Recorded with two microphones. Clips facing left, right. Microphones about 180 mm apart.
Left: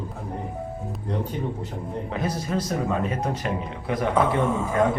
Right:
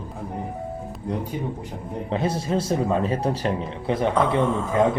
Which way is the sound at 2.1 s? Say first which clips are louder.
Right 4 dB; 30° right (ahead or behind).